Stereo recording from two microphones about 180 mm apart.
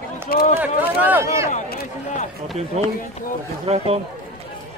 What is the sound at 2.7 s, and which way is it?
Speech, 35° right (ahead or behind).